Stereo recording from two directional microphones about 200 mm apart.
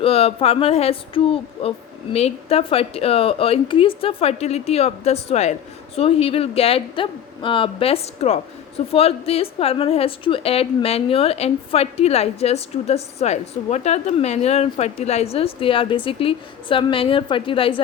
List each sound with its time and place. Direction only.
0.0 s a woman's voice: 30° left (ahead or behind)